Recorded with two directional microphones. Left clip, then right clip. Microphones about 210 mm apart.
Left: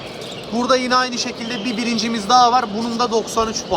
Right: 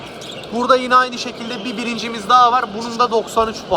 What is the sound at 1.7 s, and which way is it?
Speech, centre (ahead or behind).